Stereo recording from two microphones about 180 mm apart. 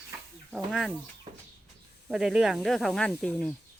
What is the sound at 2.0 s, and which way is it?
Speech, centre (ahead or behind).